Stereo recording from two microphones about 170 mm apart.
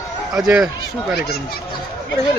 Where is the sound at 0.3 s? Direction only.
5° right (ahead or behind).